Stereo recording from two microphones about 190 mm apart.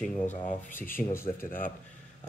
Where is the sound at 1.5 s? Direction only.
45° left (ahead or behind).